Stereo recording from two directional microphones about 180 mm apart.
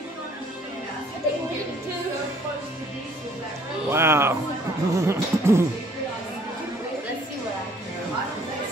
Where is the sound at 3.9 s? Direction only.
15° right (ahead or behind).